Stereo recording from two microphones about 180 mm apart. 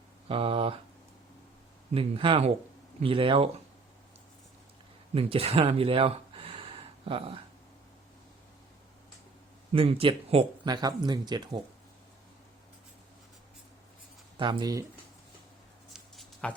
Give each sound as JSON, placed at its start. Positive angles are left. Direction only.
{"t": 0.3, "sound": "speech", "side_deg": -30}
{"t": 1.9, "sound": "speech", "side_deg": -30}
{"t": 5.1, "sound": "speech", "side_deg": -30}
{"t": 9.7, "sound": "speech", "side_deg": -30}
{"t": 14.3, "sound": "speech", "side_deg": -25}
{"t": 15.9, "sound": "a sound", "side_deg": 5}